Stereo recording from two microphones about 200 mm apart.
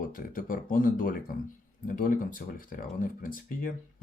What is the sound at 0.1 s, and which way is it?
Speech, 45° left (ahead or behind).